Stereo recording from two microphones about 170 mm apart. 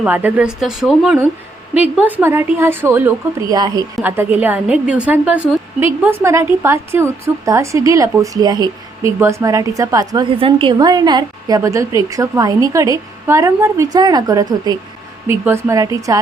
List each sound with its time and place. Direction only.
0.0 s a woman's voice: 10° right (ahead or behind)